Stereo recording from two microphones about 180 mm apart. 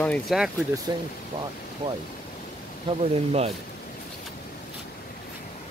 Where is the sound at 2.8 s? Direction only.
35° right (ahead or behind).